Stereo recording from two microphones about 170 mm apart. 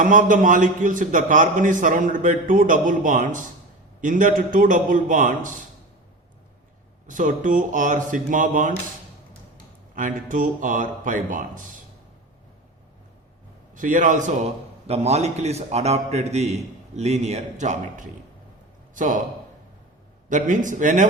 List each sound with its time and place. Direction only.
0.0 s a man's voice: 50° right (ahead or behind)
7.1 s a man's voice: 50° right (ahead or behind)
9.9 s a man's voice: 50° right (ahead or behind)
13.7 s a man's voice: 50° right (ahead or behind)
20.3 s a man's voice: 50° right (ahead or behind)